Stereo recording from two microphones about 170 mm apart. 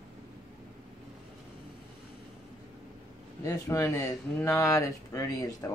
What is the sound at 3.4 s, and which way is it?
Speech, 15° left (ahead or behind).